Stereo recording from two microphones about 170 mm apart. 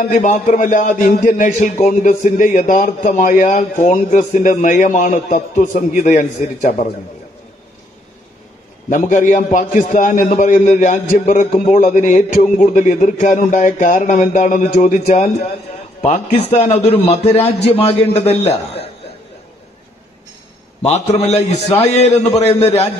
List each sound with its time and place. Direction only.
0.0 s a man's voice: 45° left (ahead or behind)
8.8 s a man's voice: 45° left (ahead or behind)
20.8 s a man's voice: 40° left (ahead or behind)